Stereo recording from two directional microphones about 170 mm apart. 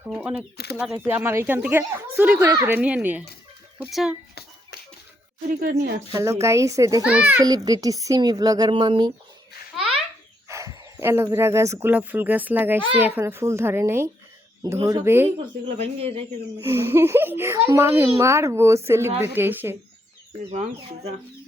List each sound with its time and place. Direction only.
0.0 s speech: 5° right (ahead or behind)
0.5 s speech: 70° left (ahead or behind)
0.8 s speech: 10° right (ahead or behind)
2.7 s speech: 10° right (ahead or behind)
5.5 s speech: 55° right (ahead or behind)
6.1 s speech: 20° right (ahead or behind)
7.0 s speech: 5° right (ahead or behind)
7.4 s speech: 20° right (ahead or behind)
9.7 s baby laughter: centre (ahead or behind)
10.5 s speech: 20° right (ahead or behind)
15.8 s speech: 35° right (ahead or behind)
16.6 s speech: 15° right (ahead or behind)
20.5 s speech: 40° right (ahead or behind)